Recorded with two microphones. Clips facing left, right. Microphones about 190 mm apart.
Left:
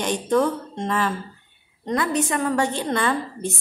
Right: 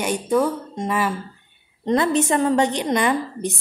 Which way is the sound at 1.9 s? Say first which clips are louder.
Right 4 dB; 25° right (ahead or behind).